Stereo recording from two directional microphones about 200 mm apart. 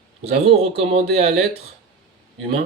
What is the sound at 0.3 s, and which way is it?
Speech, 30° right (ahead or behind).